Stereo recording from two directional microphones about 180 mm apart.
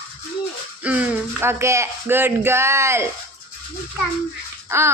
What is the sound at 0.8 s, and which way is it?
Speech, 10° right (ahead or behind).